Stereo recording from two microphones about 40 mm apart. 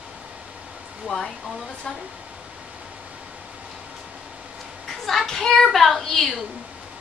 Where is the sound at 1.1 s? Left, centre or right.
Centre.